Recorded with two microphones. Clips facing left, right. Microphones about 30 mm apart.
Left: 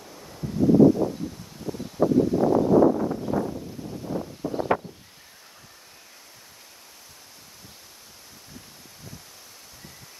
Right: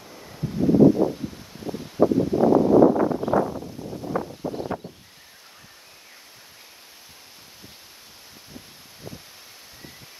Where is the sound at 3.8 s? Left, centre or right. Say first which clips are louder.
Right 2 dB; centre.